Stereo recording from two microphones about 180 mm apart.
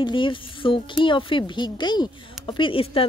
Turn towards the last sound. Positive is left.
turn(degrees=30)  # may be behind; listen again after turning